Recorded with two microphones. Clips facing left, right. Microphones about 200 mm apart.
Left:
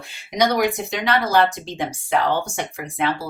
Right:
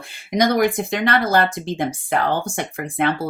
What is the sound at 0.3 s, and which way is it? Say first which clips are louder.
Speech: right 2 dB; 50° right (ahead or behind).